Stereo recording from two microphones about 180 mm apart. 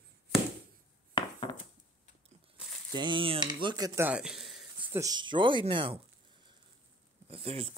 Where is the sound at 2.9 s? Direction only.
25° right (ahead or behind).